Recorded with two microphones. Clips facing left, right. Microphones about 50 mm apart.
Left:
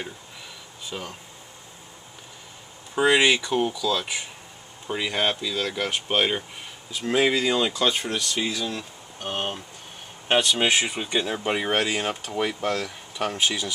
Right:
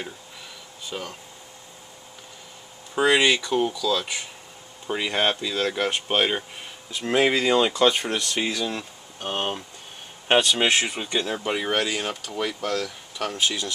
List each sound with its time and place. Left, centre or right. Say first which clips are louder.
0.8 s speech: right 1 dB; centre
2.9 s speech: even; centre
4.8 s speech: right 1 dB; centre
7.1 s speech: right 1 dB; centre
8.2 s speech: right 1 dB; right
8.6 s speech: right 1 dB; centre
10.7 s speech: even; centre